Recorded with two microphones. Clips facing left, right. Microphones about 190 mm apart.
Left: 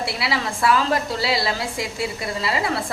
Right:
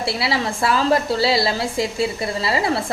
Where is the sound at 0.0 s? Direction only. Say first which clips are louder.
Right 3 dB; 30° right (ahead or behind).